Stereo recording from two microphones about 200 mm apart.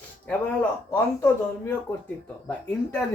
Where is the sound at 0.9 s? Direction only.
10° left (ahead or behind).